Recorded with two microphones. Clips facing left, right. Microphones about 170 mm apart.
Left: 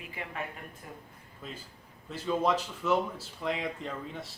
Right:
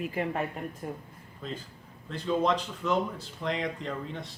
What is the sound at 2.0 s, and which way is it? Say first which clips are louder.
Speech: right 2 dB; 5° left (ahead or behind).